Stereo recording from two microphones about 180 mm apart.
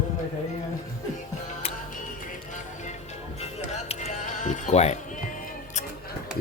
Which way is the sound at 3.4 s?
35° left (ahead or behind).